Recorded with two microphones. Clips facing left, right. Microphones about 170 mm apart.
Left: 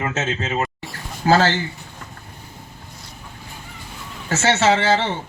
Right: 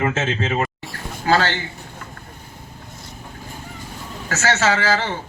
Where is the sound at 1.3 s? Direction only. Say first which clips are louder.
Left 2 dB; 40° left (ahead or behind).